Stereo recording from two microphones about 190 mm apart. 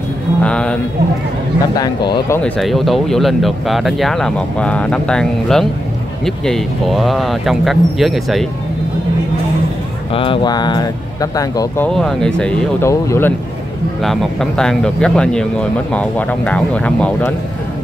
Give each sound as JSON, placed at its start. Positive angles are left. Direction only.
{"t": 0.4, "sound": "a sound", "side_deg": 5}
{"t": 1.8, "sound": "speech", "side_deg": 20}
{"t": 2.6, "sound": "speech", "side_deg": 0}
{"t": 10.1, "sound": "speech", "side_deg": 25}
{"t": 11.9, "sound": "speech", "side_deg": 5}
{"t": 14.0, "sound": "speech", "side_deg": 0}